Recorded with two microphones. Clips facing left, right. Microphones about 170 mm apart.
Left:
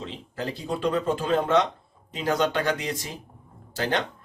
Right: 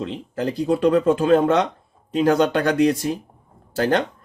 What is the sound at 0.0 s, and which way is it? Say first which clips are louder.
Speech: right 8 dB; 55° right (ahead or behind).